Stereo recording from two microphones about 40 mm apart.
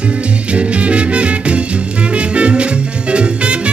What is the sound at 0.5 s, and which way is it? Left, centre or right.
Music, right.